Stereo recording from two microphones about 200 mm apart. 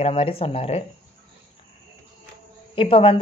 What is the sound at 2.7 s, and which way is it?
Speech, 25° left (ahead or behind).